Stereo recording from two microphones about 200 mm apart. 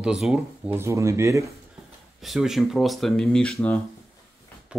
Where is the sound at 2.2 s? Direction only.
Centre (ahead or behind).